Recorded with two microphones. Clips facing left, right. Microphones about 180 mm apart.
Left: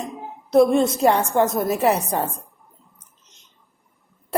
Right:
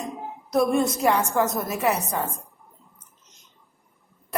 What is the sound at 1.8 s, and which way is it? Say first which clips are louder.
Speech: left 3 dB; 30° left (ahead or behind).